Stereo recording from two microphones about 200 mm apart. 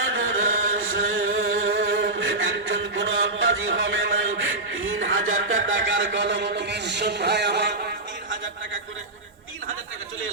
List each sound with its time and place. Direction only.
0.0 s chant: 70° right (ahead or behind)